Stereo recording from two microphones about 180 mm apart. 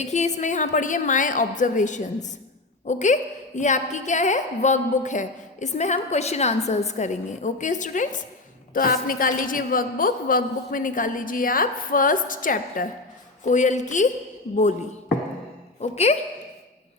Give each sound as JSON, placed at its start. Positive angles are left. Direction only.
{"t": 0.0, "sound": "a woman's voice", "side_deg": 40}
{"t": 15.8, "sound": "a woman's voice", "side_deg": 35}